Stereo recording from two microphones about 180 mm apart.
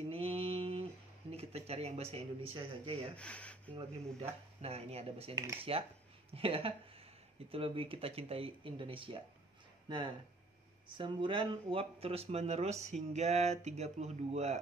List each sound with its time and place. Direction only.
0.1 s mantra: 30° right (ahead or behind)
1.3 s speech: 35° right (ahead or behind)
3.2 s speech: 5° left (ahead or behind)
4.2 s speech: 35° right (ahead or behind)